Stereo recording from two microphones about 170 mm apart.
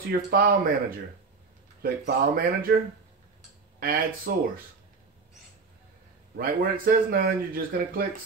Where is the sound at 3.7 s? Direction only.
60° right (ahead or behind).